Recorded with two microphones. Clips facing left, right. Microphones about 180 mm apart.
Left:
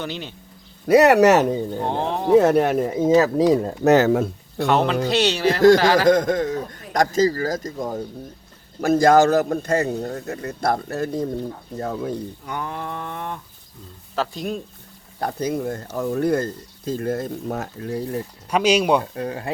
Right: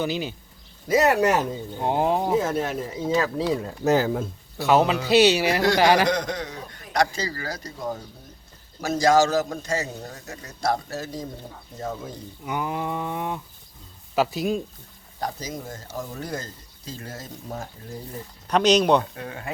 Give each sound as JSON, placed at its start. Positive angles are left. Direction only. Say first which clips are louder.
{"t": 0.0, "sound": "speech", "louder": "right 4 dB", "side_deg": -5}
{"t": 0.9, "sound": "speech", "louder": "left 7 dB", "side_deg": 65}
{"t": 1.9, "sound": "livestock", "louder": "right 4 dB", "side_deg": -10}
{"t": 2.3, "sound": "speech", "louder": "left 9 dB", "side_deg": 65}
{"t": 3.2, "sound": "a man's voice", "louder": "left 7 dB", "side_deg": 40}
{"t": 3.8, "sound": "speech", "louder": "left 6 dB", "side_deg": 75}
{"t": 4.6, "sound": "speech", "louder": "even", "side_deg": -5}
{"t": 5.0, "sound": "livestock", "louder": "right 1 dB", "side_deg": -5}
{"t": 6.1, "sound": "a man's voice", "louder": "left 9 dB", "side_deg": 50}
{"t": 12.5, "sound": "livestock", "louder": "right 4 dB", "side_deg": -10}
{"t": 14.2, "sound": "speech", "louder": "right 3 dB", "side_deg": -5}
{"t": 15.2, "sound": "speech", "louder": "left 8 dB", "side_deg": 60}
{"t": 18.4, "sound": "speech", "louder": "even", "side_deg": 10}
{"t": 19.1, "sound": "speech", "louder": "left 8 dB", "side_deg": 35}